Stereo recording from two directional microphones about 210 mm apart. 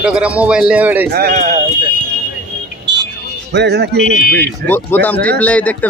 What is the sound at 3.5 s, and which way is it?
Speech, 55° right (ahead or behind).